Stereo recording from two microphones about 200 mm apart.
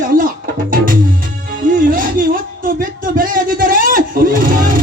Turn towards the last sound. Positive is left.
turn(degrees=-45)  # may be behind; listen again after turning